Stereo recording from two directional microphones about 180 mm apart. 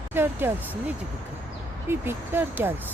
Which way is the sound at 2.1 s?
10° right (ahead or behind).